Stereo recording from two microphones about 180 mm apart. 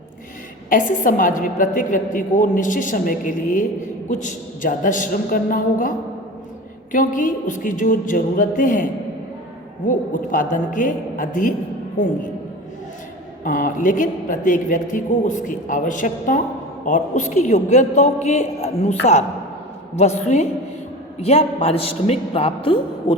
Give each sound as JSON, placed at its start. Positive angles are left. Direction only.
{"t": 0.7, "sound": "speech", "side_deg": 45}
{"t": 6.9, "sound": "speech", "side_deg": 50}
{"t": 13.4, "sound": "a woman's voice", "side_deg": 45}